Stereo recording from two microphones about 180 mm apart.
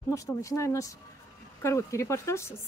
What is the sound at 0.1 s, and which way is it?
Speech, 15° left (ahead or behind).